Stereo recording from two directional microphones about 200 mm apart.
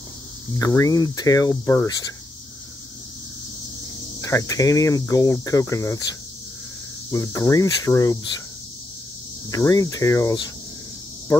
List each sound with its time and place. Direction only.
0.6 s cricket: 15° left (ahead or behind)
4.2 s cricket: 15° left (ahead or behind)
7.1 s cricket: 15° left (ahead or behind)
9.5 s cricket: 15° left (ahead or behind)